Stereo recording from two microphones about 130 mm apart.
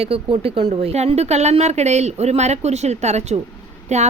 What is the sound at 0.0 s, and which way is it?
A woman's voice, 45° right (ahead or behind).